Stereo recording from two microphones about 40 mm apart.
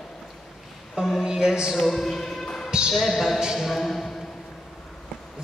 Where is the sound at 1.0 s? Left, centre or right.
Centre.